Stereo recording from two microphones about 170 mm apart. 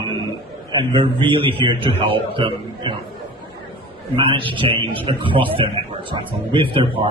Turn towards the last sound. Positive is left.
turn(degrees=-30)  # may be behind; listen again after turning